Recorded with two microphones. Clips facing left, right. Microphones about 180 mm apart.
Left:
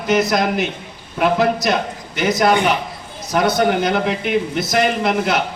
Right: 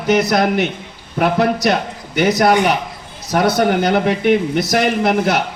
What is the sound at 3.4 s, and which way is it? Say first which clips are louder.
Speech: right 2 dB; 60° right (ahead or behind).